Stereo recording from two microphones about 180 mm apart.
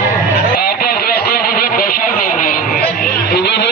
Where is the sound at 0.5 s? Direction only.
55° left (ahead or behind).